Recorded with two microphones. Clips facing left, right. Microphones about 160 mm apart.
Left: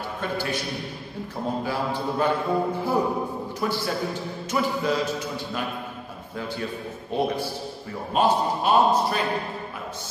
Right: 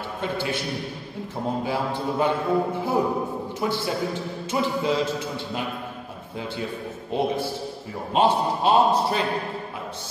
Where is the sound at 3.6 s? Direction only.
20° right (ahead or behind).